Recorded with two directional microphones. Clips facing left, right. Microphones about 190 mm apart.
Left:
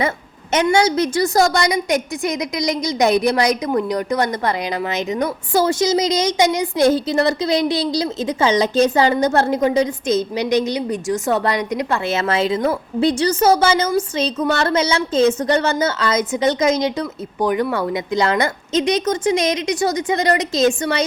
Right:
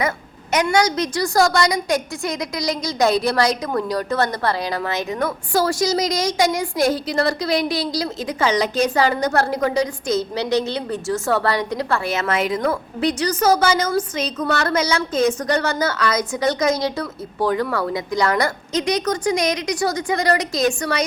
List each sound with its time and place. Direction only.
0.5 s a woman's voice: 25° left (ahead or behind)
12.1 s a woman's voice: 30° left (ahead or behind)